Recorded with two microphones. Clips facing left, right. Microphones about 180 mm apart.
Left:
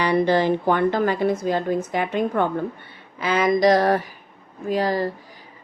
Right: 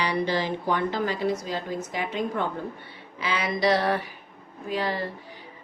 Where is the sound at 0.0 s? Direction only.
55° left (ahead or behind).